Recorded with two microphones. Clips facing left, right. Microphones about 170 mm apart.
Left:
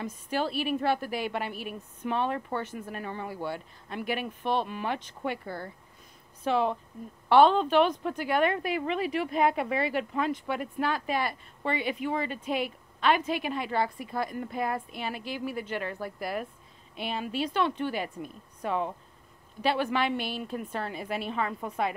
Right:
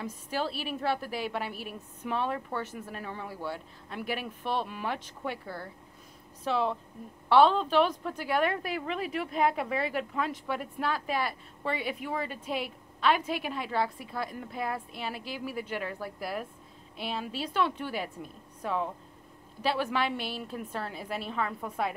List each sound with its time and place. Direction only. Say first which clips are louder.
0.0 s speech: left 2 dB; centre (ahead or behind)
0.5 s a woman's voice: left 6 dB; 55° left (ahead or behind)
0.7 s speech: left 1 dB; centre (ahead or behind)
7.8 s speech: left 2 dB; centre (ahead or behind)